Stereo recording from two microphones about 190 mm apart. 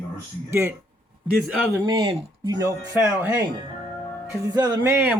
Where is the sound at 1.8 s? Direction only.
25° right (ahead or behind).